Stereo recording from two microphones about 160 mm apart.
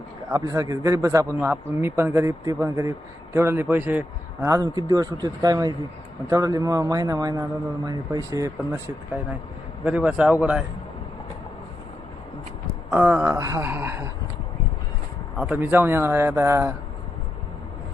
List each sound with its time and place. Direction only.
0.3 s a man's voice: 20° right (ahead or behind)
9.8 s a man's voice: 10° right (ahead or behind)
12.9 s a man's voice: 10° right (ahead or behind)
15.4 s a man's voice: 10° right (ahead or behind)